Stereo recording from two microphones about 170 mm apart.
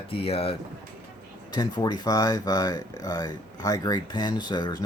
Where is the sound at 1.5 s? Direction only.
25° left (ahead or behind).